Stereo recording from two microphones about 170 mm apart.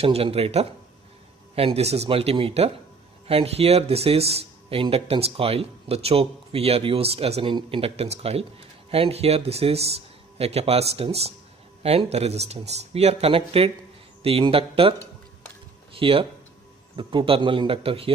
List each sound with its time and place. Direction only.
0.0 s speech: 35° right (ahead or behind)
16.0 s speech: 30° right (ahead or behind)